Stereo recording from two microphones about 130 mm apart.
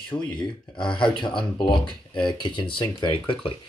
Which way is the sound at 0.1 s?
30° left (ahead or behind).